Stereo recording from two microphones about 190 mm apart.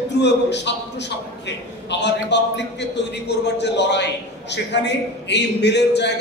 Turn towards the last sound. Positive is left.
turn(degrees=65)  # may be behind; listen again after turning